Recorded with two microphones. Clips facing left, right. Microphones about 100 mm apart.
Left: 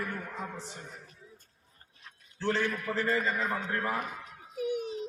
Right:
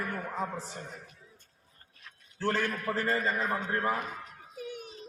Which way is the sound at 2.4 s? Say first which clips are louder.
Even; 45° right (ahead or behind).